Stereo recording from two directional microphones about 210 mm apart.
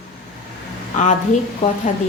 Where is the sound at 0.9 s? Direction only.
35° left (ahead or behind).